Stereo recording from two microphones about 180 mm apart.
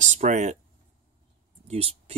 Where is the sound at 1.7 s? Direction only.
35° right (ahead or behind).